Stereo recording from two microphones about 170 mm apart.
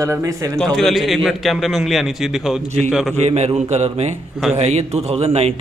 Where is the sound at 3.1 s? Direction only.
40° right (ahead or behind).